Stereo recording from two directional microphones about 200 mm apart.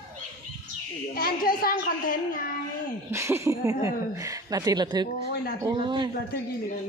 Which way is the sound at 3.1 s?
15° right (ahead or behind).